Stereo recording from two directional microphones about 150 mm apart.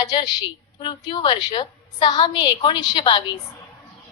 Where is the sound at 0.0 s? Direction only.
30° left (ahead or behind).